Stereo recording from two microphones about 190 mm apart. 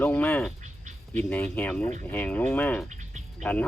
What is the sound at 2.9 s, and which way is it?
Insect, 40° right (ahead or behind).